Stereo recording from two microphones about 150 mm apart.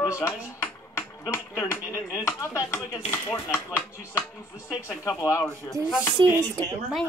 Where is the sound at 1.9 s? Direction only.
20° left (ahead or behind).